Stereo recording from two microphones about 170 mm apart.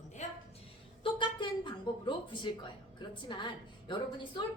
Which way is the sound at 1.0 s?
30° left (ahead or behind).